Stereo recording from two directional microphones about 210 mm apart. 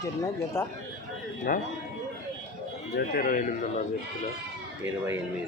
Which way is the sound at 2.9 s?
45° left (ahead or behind).